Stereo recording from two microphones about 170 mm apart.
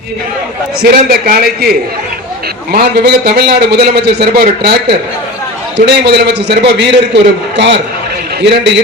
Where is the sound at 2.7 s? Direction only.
70° right (ahead or behind).